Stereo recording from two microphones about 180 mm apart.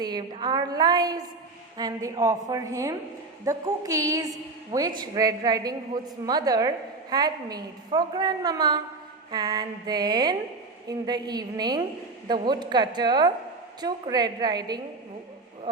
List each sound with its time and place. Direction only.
0.0 s a woman's voice: 25° right (ahead or behind)